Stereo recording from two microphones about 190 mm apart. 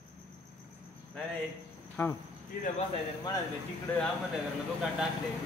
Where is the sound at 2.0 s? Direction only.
15° left (ahead or behind).